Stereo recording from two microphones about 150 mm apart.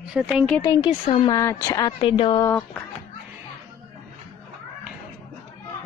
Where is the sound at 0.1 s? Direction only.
5° right (ahead or behind).